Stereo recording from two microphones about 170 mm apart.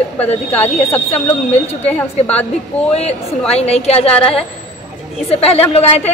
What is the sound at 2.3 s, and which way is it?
Speech, 10° left (ahead or behind).